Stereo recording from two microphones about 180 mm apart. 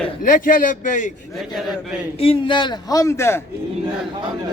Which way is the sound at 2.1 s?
30° left (ahead or behind).